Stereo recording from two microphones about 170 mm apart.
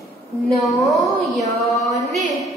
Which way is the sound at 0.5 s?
Centre (ahead or behind).